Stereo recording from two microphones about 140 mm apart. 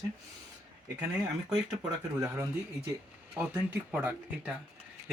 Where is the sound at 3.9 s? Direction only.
10° right (ahead or behind).